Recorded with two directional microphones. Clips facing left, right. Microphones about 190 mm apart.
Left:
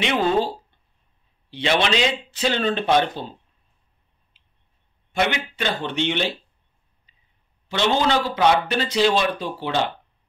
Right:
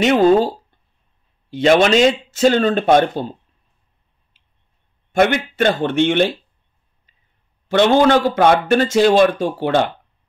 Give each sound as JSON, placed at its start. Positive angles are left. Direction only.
{"t": 0.0, "sound": "speech", "side_deg": -45}
{"t": 1.5, "sound": "speech", "side_deg": -45}
{"t": 5.1, "sound": "speech", "side_deg": -50}
{"t": 7.1, "sound": "clicking", "side_deg": -50}
{"t": 7.6, "sound": "speech", "side_deg": -50}